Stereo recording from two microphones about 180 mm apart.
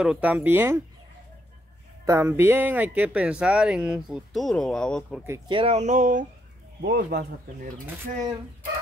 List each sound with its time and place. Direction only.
0.0 s speech: 5° right (ahead or behind)
2.0 s speech: 15° right (ahead or behind); by 5.2 s 5° left (ahead or behind)
5.5 s speech: 35° right (ahead or behind)
6.8 s speech: 65° right (ahead or behind)